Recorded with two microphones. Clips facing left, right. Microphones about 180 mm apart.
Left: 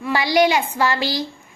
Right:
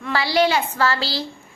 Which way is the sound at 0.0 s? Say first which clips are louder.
Left 2 dB; 15° left (ahead or behind).